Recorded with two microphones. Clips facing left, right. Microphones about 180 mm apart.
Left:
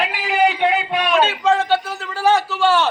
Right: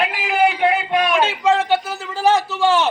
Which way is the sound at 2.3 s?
20° right (ahead or behind).